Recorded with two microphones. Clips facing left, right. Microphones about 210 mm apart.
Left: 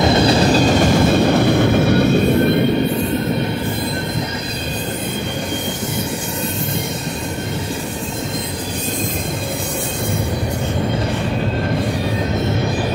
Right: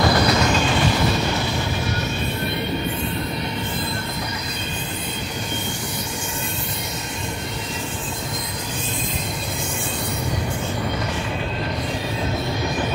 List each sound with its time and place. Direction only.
0.0 s vehicle: 25° left (ahead or behind); by 2.0 s 60° left (ahead or behind)